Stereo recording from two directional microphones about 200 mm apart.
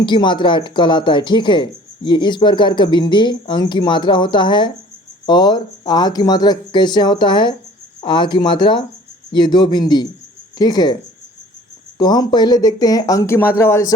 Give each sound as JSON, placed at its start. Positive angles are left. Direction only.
{"t": 0.0, "sound": "speech", "side_deg": 25}
{"t": 11.9, "sound": "speech", "side_deg": 20}